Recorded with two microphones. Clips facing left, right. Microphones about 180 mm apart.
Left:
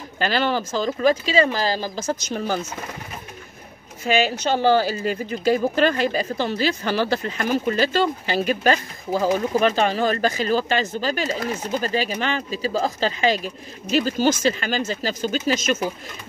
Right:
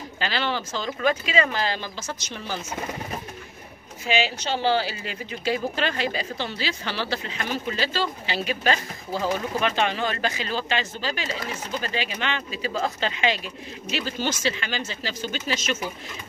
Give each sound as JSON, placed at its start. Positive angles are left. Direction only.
{"t": 0.2, "sound": "speech", "side_deg": 45}
{"t": 4.0, "sound": "speech", "side_deg": 45}